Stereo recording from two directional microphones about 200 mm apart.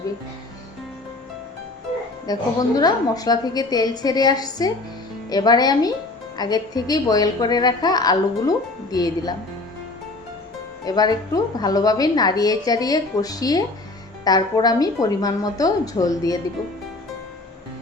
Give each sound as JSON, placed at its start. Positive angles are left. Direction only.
{"t": 2.2, "sound": "a woman's voice", "side_deg": 20}
{"t": 10.8, "sound": "a woman's voice", "side_deg": 20}